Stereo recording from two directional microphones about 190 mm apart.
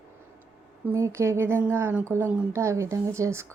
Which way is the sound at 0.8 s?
15° right (ahead or behind).